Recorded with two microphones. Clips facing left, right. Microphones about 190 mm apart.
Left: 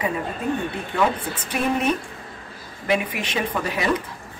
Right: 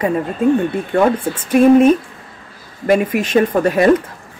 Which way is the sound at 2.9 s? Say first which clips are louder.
Right 10 dB; 45° right (ahead or behind).